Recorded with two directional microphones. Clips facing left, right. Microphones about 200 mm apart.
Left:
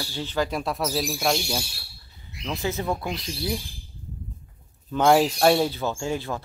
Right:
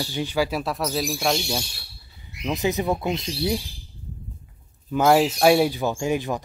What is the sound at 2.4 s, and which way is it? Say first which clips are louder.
Speech: right 4 dB; 20° right (ahead or behind).